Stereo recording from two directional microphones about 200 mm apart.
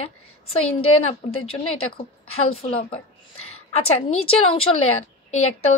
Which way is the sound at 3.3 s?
90° left.